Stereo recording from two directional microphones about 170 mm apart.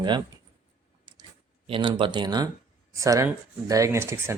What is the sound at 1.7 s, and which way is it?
Speech, 30° right (ahead or behind).